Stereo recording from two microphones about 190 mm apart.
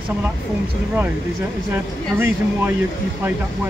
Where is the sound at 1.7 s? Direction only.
10° right (ahead or behind).